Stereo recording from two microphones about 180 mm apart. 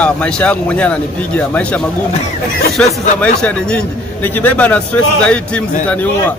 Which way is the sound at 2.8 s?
5° left (ahead or behind).